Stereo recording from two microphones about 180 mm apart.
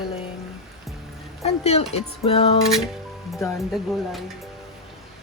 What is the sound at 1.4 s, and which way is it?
Music, 35° left (ahead or behind).